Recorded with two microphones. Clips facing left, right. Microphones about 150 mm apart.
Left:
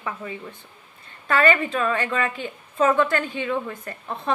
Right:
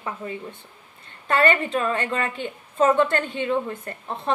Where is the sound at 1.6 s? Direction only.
30° right (ahead or behind).